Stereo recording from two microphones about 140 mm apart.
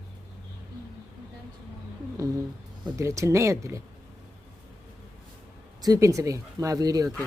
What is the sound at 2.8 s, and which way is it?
Speech, 20° right (ahead or behind).